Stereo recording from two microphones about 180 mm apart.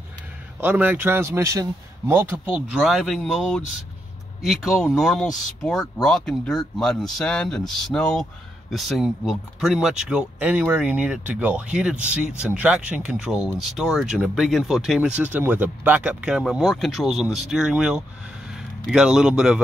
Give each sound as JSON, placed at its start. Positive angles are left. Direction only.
{"t": 0.6, "sound": "a man's voice", "side_deg": -10}